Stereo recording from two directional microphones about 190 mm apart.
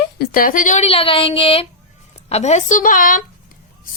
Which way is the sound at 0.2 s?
50° left (ahead or behind).